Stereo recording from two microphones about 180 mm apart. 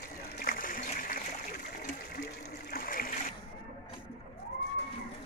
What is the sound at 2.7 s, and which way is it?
Splash, 55° left (ahead or behind).